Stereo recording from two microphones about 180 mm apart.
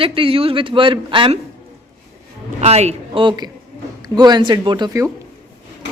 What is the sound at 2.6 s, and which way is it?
A woman's voice, 35° right (ahead or behind).